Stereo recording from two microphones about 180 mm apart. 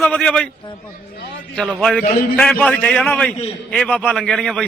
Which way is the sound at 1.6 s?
5° right (ahead or behind).